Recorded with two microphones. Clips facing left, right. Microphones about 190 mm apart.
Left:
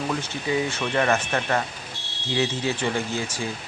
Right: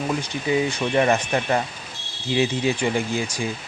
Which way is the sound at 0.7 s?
15° right (ahead or behind).